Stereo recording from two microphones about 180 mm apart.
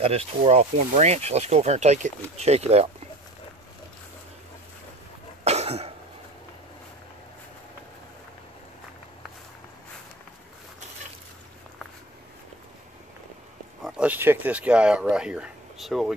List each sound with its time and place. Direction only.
0.0 s speech: 35° right (ahead or behind)
5.4 s cough: 35° right (ahead or behind)
13.8 s speech: 5° right (ahead or behind)